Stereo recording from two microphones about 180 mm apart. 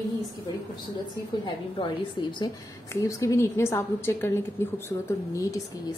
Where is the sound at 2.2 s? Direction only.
25° left (ahead or behind).